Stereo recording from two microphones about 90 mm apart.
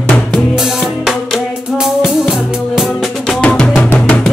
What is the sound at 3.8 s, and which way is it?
Music, 20° left (ahead or behind).